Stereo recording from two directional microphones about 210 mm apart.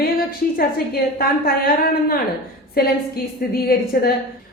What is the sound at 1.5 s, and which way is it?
A woman's voice, 45° left (ahead or behind).